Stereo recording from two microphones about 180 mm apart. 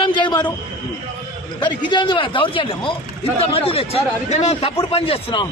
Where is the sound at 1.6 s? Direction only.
25° left (ahead or behind).